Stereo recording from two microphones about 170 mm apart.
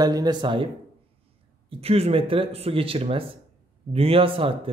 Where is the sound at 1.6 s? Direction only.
35° right (ahead or behind).